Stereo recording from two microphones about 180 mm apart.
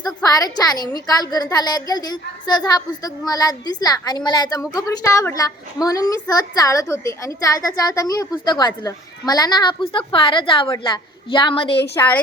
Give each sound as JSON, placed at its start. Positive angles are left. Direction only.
{"t": 0.0, "sound": "a woman's voice", "side_deg": 20}